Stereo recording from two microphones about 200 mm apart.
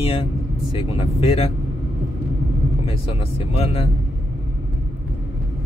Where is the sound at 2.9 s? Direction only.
30° left (ahead or behind).